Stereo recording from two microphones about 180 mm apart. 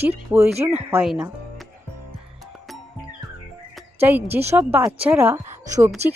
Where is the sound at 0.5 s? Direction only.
35° right (ahead or behind).